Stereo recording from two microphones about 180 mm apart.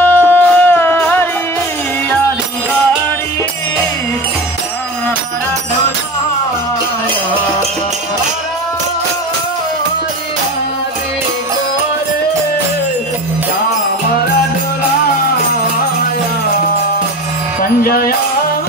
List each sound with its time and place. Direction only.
0.0 s music: 10° left (ahead or behind)
17.6 s music: 55° left (ahead or behind)